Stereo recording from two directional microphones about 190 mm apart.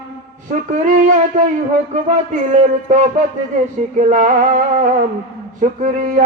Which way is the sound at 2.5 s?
40° right (ahead or behind).